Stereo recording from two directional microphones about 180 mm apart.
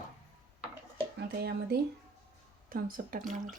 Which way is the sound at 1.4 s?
60° right (ahead or behind).